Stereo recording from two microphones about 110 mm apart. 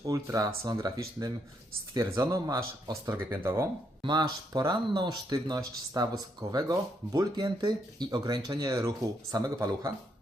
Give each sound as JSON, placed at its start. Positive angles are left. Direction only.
{"t": 0.3, "sound": "speech", "side_deg": -30}
{"t": 4.0, "sound": "speech", "side_deg": -40}